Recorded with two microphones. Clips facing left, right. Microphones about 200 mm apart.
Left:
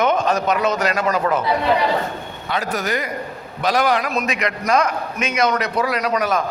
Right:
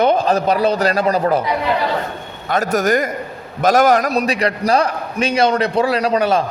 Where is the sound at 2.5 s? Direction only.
45° right (ahead or behind); by 6.4 s 30° right (ahead or behind).